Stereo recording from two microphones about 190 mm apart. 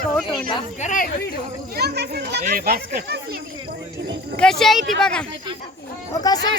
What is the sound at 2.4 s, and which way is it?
Speech, 50° right (ahead or behind).